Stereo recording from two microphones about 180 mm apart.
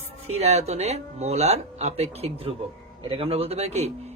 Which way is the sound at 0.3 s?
35° right (ahead or behind).